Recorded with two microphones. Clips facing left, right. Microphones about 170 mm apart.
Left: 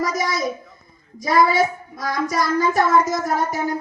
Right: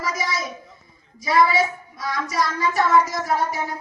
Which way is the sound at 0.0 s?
45° left (ahead or behind).